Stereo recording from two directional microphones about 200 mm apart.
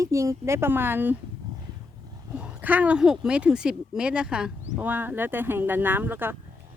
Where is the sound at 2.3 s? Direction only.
5° right (ahead or behind).